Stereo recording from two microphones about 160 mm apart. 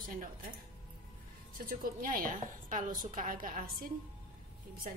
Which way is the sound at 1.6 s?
60° right (ahead or behind).